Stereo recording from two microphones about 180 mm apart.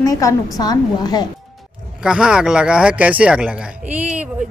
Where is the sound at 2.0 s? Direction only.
5° right (ahead or behind).